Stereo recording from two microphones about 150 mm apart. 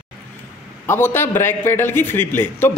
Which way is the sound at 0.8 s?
15° left (ahead or behind).